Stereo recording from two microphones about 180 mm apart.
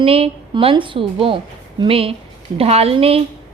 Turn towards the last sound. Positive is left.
turn(degrees=-30)  # may be behind; listen again after turning